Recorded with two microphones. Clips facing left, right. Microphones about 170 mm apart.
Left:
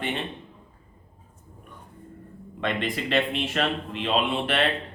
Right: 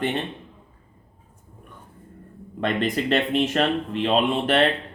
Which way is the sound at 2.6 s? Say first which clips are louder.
Right 4 dB; 40° right (ahead or behind).